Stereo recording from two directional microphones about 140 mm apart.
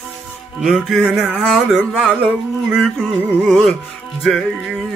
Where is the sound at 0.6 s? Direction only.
Centre (ahead or behind).